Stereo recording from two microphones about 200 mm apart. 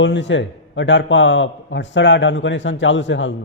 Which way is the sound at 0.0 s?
65° left (ahead or behind).